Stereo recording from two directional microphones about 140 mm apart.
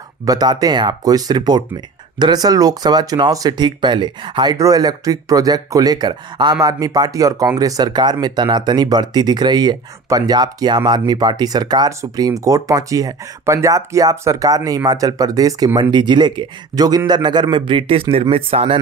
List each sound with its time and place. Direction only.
0.2 s speech: 25° right (ahead or behind); by 18.8 s 45° right (ahead or behind)